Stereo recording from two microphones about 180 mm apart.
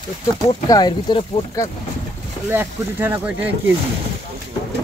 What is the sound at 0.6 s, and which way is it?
Speech, 20° left (ahead or behind).